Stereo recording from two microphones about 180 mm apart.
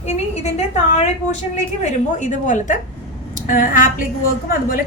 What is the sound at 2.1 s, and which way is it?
A woman's voice, 45° left (ahead or behind).